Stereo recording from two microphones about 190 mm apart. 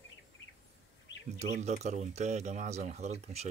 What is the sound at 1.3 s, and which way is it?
Speech, 35° right (ahead or behind).